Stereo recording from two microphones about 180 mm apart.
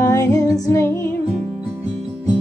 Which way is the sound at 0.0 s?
15° left (ahead or behind).